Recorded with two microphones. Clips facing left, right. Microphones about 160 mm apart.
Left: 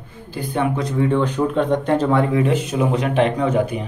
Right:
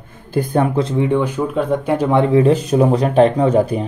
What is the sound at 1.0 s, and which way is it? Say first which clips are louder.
Speech: right 1 dB; 10° right (ahead or behind).